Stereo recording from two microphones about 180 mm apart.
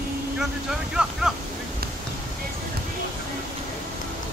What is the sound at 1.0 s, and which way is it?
Speech, 5° right (ahead or behind).